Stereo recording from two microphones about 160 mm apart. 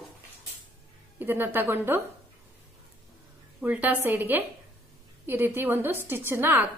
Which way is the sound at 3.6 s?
10° right (ahead or behind).